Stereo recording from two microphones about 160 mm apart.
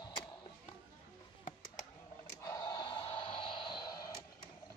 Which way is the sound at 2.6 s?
30° left (ahead or behind).